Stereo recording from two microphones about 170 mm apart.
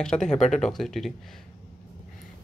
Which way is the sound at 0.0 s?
5° left (ahead or behind).